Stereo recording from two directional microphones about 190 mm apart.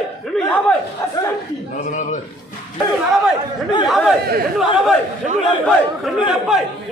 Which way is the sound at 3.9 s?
Centre (ahead or behind).